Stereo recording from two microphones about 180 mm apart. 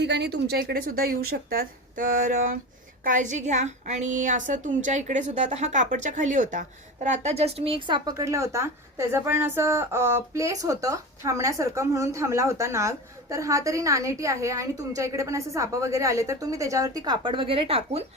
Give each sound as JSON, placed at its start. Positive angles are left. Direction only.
{"t": 0.0, "sound": "a woman's voice", "side_deg": -70}